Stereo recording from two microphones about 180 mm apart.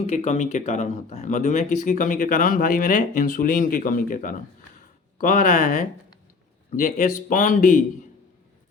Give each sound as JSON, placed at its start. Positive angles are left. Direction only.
{"t": 0.1, "sound": "speech", "side_deg": 40}